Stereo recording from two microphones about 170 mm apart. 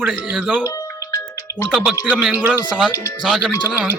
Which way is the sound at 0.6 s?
20° left (ahead or behind).